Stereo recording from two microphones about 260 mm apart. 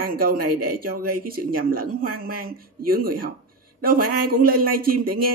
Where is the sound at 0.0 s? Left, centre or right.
Right.